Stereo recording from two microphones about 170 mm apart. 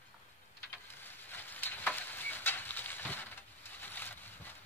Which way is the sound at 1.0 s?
10° left (ahead or behind).